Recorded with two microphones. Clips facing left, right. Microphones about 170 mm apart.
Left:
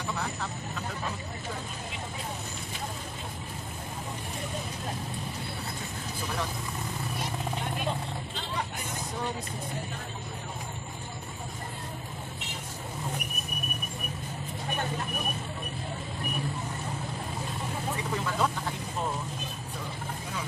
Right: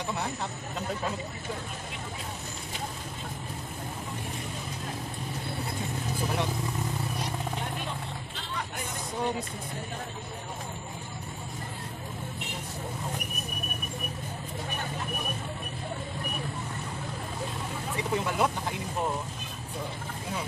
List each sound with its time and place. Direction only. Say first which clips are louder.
18.1 s vehicle: right 3 dB; 15° right (ahead or behind)